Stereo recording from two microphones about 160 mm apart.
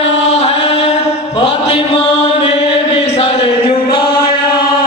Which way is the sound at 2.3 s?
35° left (ahead or behind).